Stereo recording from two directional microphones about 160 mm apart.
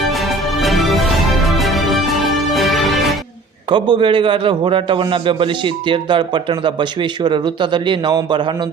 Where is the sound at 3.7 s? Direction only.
30° right (ahead or behind).